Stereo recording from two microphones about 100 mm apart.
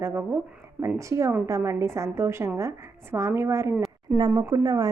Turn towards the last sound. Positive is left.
turn(degrees=-35)  # may be behind; listen again after turning